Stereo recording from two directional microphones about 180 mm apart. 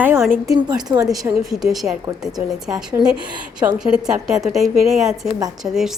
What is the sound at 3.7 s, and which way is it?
A woman's voice, 5° right (ahead or behind).